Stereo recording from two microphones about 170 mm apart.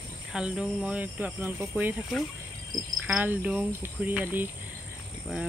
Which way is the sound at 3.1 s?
10° right (ahead or behind).